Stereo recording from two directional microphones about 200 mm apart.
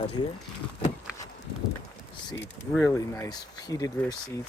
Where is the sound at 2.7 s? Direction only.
10° left (ahead or behind).